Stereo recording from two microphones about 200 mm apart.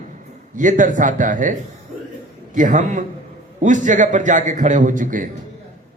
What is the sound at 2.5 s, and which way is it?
A man's voice, 40° right (ahead or behind).